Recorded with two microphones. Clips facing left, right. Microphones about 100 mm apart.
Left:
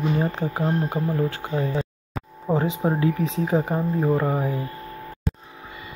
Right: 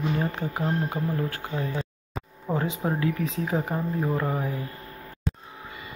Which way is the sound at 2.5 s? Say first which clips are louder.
Left 5 dB; 25° left (ahead or behind).